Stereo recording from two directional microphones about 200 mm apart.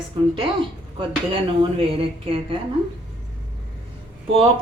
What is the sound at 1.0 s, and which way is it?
Speech, 25° right (ahead or behind).